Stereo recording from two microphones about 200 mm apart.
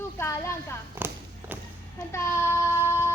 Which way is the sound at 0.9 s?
10° right (ahead or behind).